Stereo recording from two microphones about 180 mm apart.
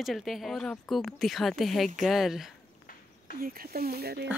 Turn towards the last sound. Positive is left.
turn(degrees=-60)  # may be behind; listen again after turning